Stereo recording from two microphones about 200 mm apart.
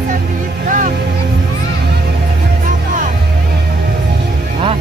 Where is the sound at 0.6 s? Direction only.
40° right (ahead or behind).